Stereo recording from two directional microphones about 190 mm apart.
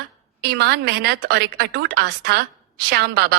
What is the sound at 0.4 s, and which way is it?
A woman's voice, 55° right (ahead or behind).